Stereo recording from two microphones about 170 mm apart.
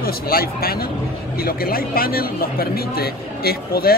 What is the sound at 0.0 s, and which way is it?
A man's voice, 60° left (ahead or behind).